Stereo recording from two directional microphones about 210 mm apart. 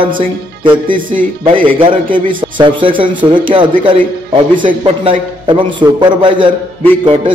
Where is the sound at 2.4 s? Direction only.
20° right (ahead or behind).